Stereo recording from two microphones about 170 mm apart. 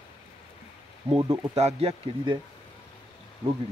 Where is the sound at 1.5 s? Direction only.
35° right (ahead or behind).